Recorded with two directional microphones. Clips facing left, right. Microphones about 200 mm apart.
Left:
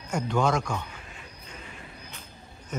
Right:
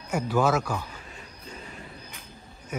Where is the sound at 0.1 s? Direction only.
5° right (ahead or behind).